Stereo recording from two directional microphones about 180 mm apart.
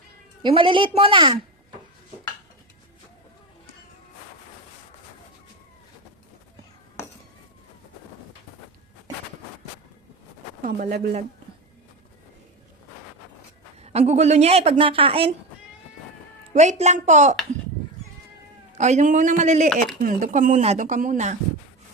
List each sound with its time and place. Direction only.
0.4 s a woman's voice: 30° right (ahead or behind)
7.0 s a sound: 15° left (ahead or behind)
10.6 s speech: 50° right (ahead or behind)
13.8 s a woman's voice: 35° right (ahead or behind)
16.5 s a woman's voice: 40° right (ahead or behind)
18.7 s a woman's voice: 40° right (ahead or behind)